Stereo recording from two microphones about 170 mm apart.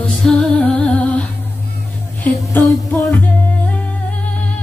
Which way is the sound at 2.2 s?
15° left (ahead or behind).